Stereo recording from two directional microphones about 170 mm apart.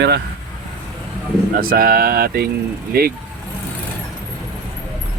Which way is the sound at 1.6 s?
60° right (ahead or behind).